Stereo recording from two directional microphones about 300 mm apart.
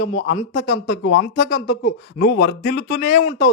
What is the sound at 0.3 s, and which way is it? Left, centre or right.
Speech, left.